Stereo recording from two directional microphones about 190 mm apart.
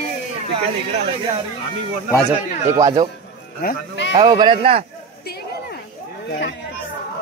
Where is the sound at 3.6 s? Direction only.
60° left (ahead or behind).